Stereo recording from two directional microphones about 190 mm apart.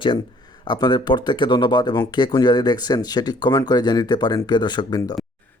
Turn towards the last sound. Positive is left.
turn(degrees=20)  # may be behind; listen again after turning